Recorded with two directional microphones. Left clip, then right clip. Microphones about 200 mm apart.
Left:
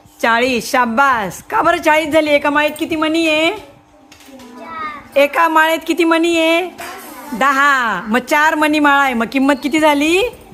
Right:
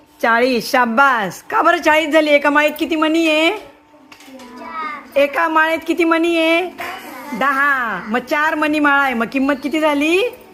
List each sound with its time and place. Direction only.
0.2 s a woman's voice: 5° left (ahead or behind)
5.1 s a woman's voice: 15° left (ahead or behind)